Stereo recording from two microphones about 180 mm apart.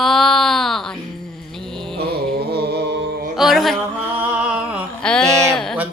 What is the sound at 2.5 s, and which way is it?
Music, 65° right (ahead or behind).